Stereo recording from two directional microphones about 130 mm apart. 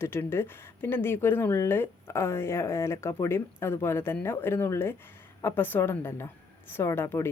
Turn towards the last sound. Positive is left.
turn(degrees=20)  # may be behind; listen again after turning